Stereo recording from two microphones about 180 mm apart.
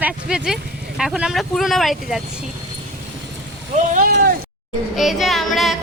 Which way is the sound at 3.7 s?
45° right (ahead or behind).